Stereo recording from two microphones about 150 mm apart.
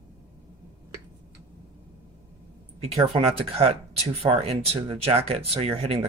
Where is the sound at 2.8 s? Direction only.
40° right (ahead or behind).